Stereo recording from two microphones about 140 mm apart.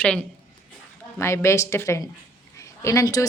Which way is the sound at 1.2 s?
20° left (ahead or behind).